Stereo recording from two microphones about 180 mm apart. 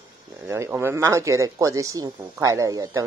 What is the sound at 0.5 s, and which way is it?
Speech, 10° right (ahead or behind).